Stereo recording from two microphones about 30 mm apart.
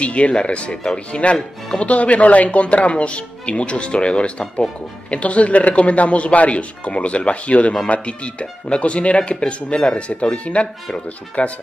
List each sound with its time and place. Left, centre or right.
0.0 s speech: left
5.1 s speech: left